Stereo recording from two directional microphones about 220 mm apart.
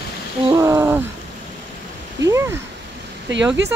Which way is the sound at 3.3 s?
55° right (ahead or behind).